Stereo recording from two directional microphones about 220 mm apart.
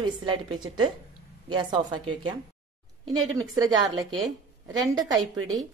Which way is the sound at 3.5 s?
15° right (ahead or behind).